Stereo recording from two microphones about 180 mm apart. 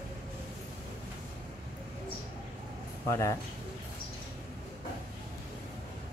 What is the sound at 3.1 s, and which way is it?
Speech, 20° left (ahead or behind).